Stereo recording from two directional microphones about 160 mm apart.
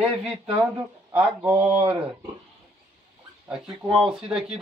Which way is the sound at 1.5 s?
35° right (ahead or behind).